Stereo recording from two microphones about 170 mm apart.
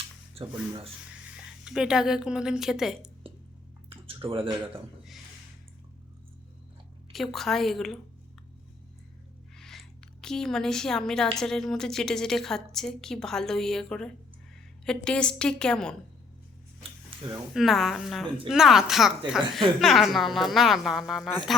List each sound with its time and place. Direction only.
0.4 s speech: 35° right (ahead or behind)
1.5 s a woman's voice: 5° right (ahead or behind)
3.8 s a sound: 35° right (ahead or behind)
7.1 s a woman's voice: centre (ahead or behind)
9.6 s a woman's voice: centre (ahead or behind)
17.5 s a woman's voice: centre (ahead or behind)